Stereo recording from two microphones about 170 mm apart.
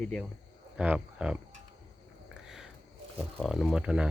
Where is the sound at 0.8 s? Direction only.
5° right (ahead or behind).